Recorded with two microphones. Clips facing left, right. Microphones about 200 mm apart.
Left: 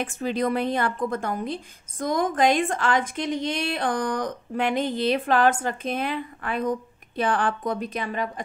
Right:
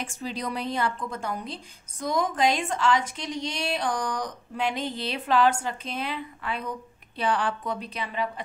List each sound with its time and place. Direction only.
0.0 s a woman's voice: 55° left (ahead or behind)